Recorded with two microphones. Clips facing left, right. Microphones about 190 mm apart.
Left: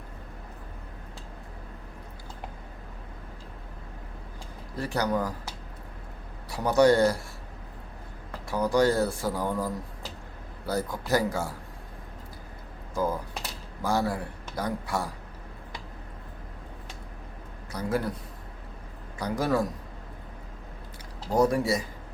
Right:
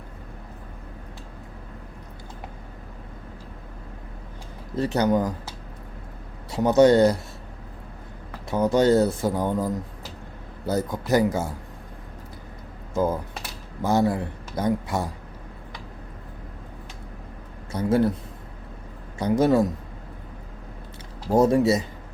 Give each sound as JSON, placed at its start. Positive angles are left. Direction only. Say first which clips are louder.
{"t": 4.7, "sound": "speech", "louder": "right 6 dB", "side_deg": -20}
{"t": 6.5, "sound": "speech", "louder": "right 4 dB", "side_deg": -20}
{"t": 8.4, "sound": "speech", "louder": "right 4 dB", "side_deg": -20}
{"t": 12.9, "sound": "speech", "louder": "right 5 dB", "side_deg": -25}
{"t": 17.7, "sound": "a man's voice", "louder": "right 8 dB", "side_deg": -25}
{"t": 19.2, "sound": "speech", "louder": "right 7 dB", "side_deg": -25}
{"t": 21.3, "sound": "speech", "louder": "right 5 dB", "side_deg": -25}